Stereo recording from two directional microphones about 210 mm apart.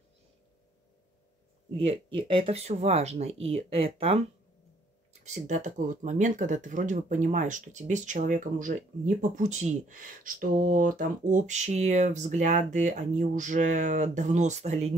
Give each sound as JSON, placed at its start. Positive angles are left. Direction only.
{"t": 2.1, "sound": "speech", "side_deg": -25}